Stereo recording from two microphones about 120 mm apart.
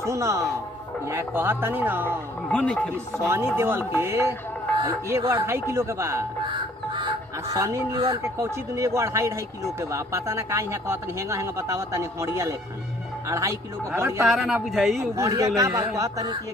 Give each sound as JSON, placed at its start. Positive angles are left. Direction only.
{"t": 0.0, "sound": "speech", "side_deg": -25}
{"t": 2.4, "sound": "speech", "side_deg": 10}
{"t": 2.9, "sound": "speech", "side_deg": -20}
{"t": 6.9, "sound": "goose", "side_deg": -45}
{"t": 7.5, "sound": "speech", "side_deg": -25}
{"t": 14.2, "sound": "a man's voice", "side_deg": 0}
{"t": 15.1, "sound": "speech", "side_deg": -30}